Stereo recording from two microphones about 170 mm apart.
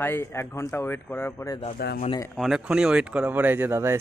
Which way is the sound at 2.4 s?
Centre (ahead or behind).